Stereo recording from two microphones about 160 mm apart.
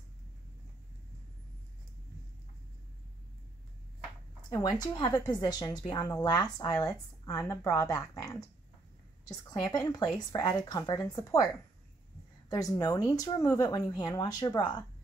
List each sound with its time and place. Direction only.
4.5 s a woman's voice: 25° left (ahead or behind)
12.4 s a woman's voice: 20° left (ahead or behind)